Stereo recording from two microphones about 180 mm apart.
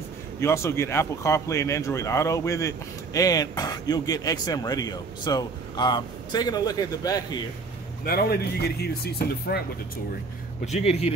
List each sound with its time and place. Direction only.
0.4 s speech: 15° left (ahead or behind)
8.0 s speech: 60° left (ahead or behind)
10.6 s speech: 40° left (ahead or behind)